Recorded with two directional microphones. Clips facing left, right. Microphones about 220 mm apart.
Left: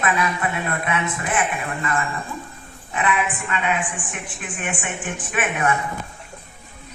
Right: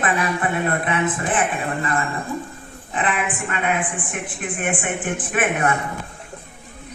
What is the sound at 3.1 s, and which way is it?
A man's voice, 50° right (ahead or behind).